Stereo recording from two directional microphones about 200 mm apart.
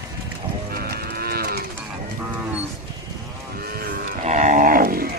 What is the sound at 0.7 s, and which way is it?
Cattle, 50° right (ahead or behind).